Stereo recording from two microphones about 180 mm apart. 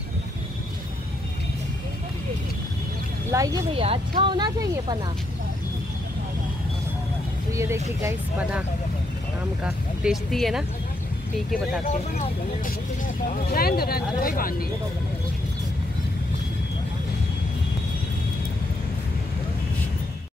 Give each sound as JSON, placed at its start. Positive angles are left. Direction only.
{"t": 3.3, "sound": "speech", "side_deg": -20}
{"t": 3.7, "sound": "speech", "side_deg": -30}
{"t": 7.5, "sound": "speech", "side_deg": -15}
{"t": 9.7, "sound": "speech", "side_deg": 0}
{"t": 13.3, "sound": "speech", "side_deg": 55}